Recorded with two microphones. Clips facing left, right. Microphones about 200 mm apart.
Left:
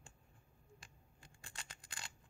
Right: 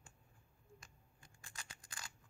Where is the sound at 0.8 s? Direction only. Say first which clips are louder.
Left 2 dB; 30° left (ahead or behind).